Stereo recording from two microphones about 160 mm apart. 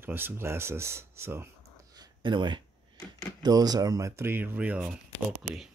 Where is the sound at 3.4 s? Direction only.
25° right (ahead or behind); by 5.0 s 10° right (ahead or behind).